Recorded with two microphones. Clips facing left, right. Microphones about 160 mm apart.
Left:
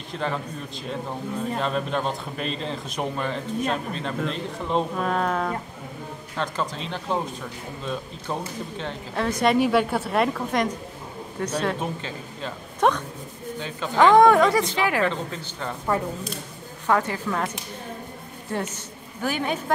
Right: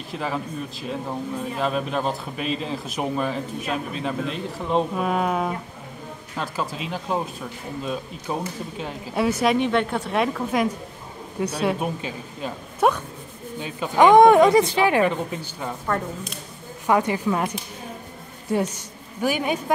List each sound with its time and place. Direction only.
0.1 s speech: 5° right (ahead or behind)
16.8 s speech: 15° right (ahead or behind)
19.2 s speech: 10° right (ahead or behind)